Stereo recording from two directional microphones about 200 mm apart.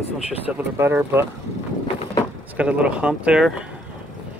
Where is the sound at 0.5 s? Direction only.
10° right (ahead or behind).